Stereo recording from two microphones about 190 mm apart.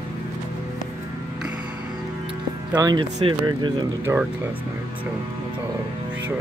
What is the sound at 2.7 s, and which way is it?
Speech, 20° right (ahead or behind).